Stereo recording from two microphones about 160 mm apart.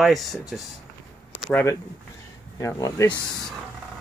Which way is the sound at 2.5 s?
20° left (ahead or behind).